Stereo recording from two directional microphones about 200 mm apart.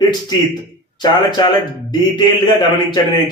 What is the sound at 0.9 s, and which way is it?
Speech, 20° left (ahead or behind).